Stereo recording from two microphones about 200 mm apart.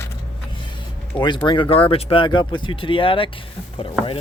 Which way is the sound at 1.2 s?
25° left (ahead or behind).